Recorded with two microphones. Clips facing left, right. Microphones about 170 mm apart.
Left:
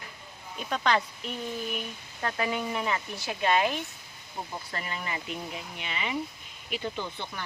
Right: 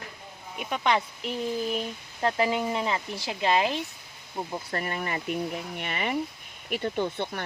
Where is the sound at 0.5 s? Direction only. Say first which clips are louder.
Right 1 dB; 15° right (ahead or behind).